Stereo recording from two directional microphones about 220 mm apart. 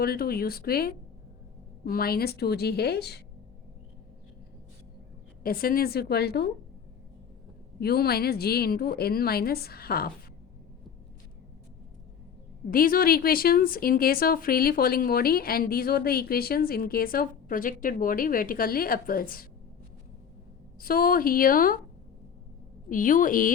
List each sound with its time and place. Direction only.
0.0 s speech: 45° left (ahead or behind)
5.4 s speech: 40° left (ahead or behind)
7.8 s speech: 45° left (ahead or behind)
12.7 s a woman's voice: 40° left (ahead or behind)
20.7 s a woman's voice: 40° left (ahead or behind)
22.9 s a woman's voice: 35° left (ahead or behind)